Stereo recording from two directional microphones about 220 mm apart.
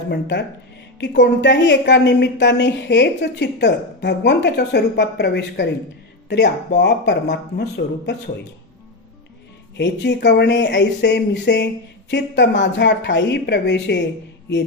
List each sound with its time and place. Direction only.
0.1 s a woman's voice: 50° left (ahead or behind)
9.8 s a woman's voice: 50° left (ahead or behind)